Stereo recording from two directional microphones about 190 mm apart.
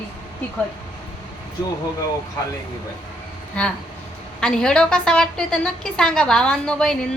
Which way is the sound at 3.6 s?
5° left (ahead or behind).